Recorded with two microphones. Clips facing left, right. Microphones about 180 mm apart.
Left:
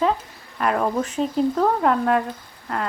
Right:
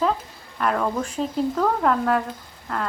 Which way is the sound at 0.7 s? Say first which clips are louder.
Left 4 dB; 20° left (ahead or behind).